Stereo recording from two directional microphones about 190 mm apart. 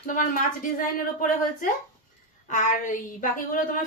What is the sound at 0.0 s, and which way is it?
Speech, 45° left (ahead or behind).